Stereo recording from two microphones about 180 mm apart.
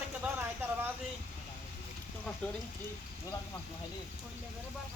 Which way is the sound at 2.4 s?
5° left (ahead or behind).